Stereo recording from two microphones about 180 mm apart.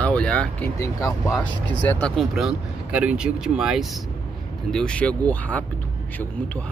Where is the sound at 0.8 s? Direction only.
15° left (ahead or behind).